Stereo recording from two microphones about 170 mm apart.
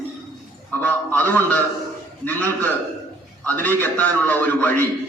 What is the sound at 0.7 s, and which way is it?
A man's voice, 10° left (ahead or behind).